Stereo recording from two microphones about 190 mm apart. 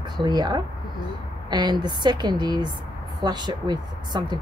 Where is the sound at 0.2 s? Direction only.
20° right (ahead or behind).